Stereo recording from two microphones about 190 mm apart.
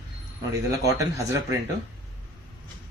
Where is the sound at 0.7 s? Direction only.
15° right (ahead or behind).